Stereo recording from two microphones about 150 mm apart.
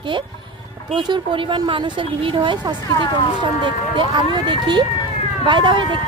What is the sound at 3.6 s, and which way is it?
Speech, 30° right (ahead or behind).